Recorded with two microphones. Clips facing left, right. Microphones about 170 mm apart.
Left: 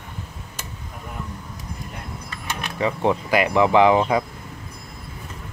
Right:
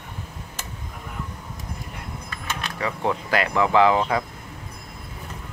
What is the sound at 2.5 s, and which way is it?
Speech, 20° left (ahead or behind).